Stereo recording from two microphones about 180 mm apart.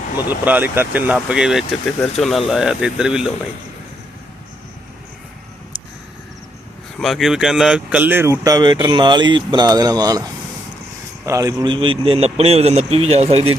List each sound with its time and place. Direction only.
0.3 s speech: 10° right (ahead or behind)
7.0 s speech: centre (ahead or behind); by 10.2 s 20° right (ahead or behind)
11.3 s a man's voice: 20° right (ahead or behind); by 13.6 s 35° right (ahead or behind)